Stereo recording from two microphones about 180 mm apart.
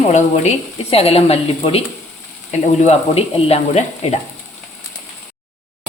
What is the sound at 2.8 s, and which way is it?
A woman's voice, 35° left (ahead or behind).